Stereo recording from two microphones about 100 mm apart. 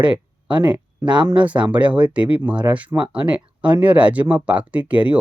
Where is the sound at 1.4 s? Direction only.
15° right (ahead or behind).